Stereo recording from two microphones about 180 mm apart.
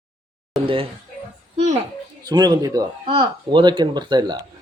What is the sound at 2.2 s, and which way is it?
Speech, 25° right (ahead or behind).